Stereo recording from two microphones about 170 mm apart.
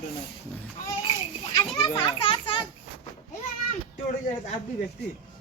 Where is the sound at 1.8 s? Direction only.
30° left (ahead or behind).